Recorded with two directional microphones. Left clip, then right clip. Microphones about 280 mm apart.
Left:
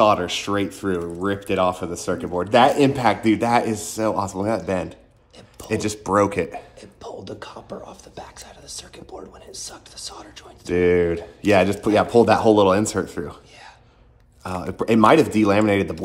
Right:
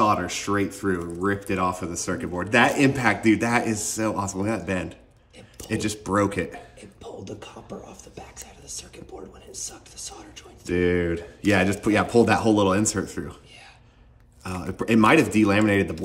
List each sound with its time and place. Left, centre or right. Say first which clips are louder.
0.0 s speech: left 5 dB; right
7.0 s beatboxing: left 4 dB; centre
10.7 s speech: left 5 dB; centre
14.4 s speech: left 5 dB; centre